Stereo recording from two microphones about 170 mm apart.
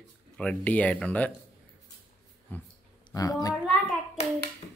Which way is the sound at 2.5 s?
10° left (ahead or behind).